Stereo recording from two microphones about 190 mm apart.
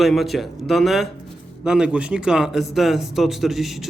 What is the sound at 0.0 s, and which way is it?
Speech, centre (ahead or behind).